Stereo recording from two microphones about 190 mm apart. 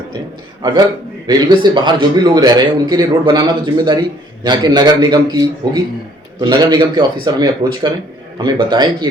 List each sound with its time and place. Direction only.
1.3 s a man's voice: 20° right (ahead or behind)